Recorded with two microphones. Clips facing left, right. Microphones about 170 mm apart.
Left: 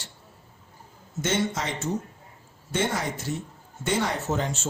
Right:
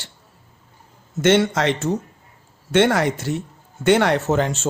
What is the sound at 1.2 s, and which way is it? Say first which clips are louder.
Speech: right 10 dB; 75° right (ahead or behind).